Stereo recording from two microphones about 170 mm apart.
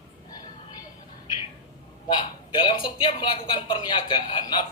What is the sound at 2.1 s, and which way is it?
A man's voice, 25° left (ahead or behind).